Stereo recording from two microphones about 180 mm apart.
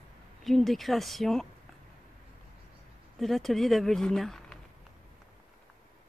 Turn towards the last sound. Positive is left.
turn(degrees=0)  # may be behind; listen again after turning